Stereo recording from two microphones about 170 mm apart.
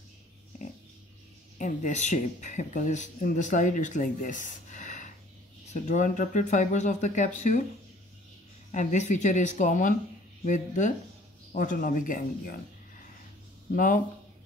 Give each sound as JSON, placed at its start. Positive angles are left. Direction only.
{"t": 1.6, "sound": "speech", "side_deg": 45}
{"t": 8.7, "sound": "speech", "side_deg": 45}
{"t": 13.7, "sound": "speech", "side_deg": 50}